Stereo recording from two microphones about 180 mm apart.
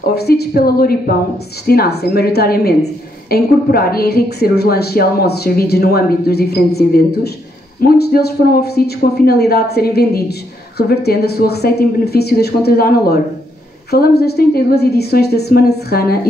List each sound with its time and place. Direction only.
0.1 s a woman's voice: 60° left (ahead or behind)